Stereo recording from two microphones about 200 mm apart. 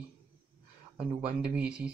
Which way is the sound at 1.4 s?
5° right (ahead or behind).